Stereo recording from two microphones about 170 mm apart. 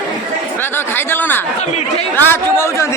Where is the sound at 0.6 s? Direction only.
10° left (ahead or behind).